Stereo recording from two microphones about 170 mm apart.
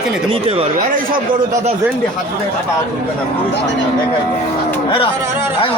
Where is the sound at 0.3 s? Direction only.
35° right (ahead or behind).